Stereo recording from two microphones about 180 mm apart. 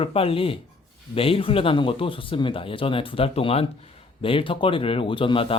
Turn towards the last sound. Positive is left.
turn(degrees=30)  # may be behind; listen again after turning